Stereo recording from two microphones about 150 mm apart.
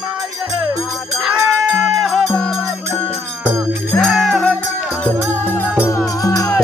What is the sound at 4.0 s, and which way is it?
Music, centre (ahead or behind).